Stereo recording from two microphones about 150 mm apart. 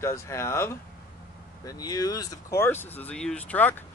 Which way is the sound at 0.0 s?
20° left (ahead or behind).